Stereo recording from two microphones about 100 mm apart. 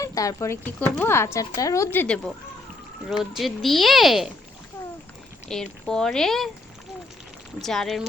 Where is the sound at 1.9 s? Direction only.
10° left (ahead or behind).